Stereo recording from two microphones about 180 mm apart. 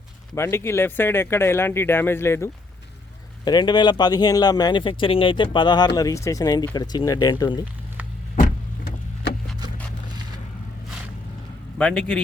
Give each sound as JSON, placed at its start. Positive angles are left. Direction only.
{"t": 0.3, "sound": "speech", "side_deg": 15}
{"t": 11.8, "sound": "a man's voice", "side_deg": 5}